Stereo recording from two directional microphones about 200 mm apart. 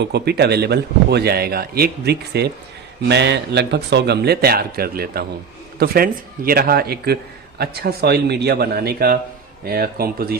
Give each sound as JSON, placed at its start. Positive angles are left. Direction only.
{"t": 0.0, "sound": "a man's voice", "side_deg": -55}